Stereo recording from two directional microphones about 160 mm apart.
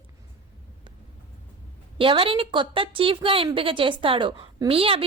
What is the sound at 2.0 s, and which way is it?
A woman's voice, 35° right (ahead or behind).